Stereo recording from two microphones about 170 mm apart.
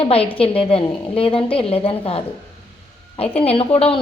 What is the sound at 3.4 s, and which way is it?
Speech, 35° left (ahead or behind).